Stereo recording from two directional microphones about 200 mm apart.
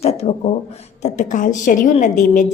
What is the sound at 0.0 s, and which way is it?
A woman's voice, 30° left (ahead or behind).